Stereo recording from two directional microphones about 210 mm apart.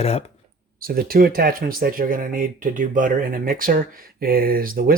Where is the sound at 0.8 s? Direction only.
45° right (ahead or behind).